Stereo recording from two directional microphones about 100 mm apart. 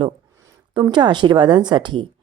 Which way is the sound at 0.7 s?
50° right (ahead or behind).